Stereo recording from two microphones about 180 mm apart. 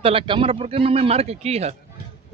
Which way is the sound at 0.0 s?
30° right (ahead or behind).